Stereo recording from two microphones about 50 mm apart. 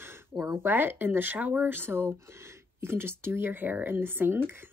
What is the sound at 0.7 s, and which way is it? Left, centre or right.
Speech, right.